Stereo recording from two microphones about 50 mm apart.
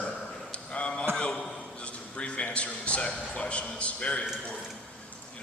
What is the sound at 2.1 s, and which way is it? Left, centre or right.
A man's voice, left.